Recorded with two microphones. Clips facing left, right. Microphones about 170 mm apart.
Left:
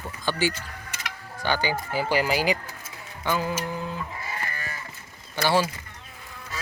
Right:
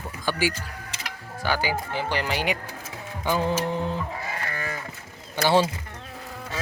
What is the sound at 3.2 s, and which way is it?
Mantra, 15° right (ahead or behind).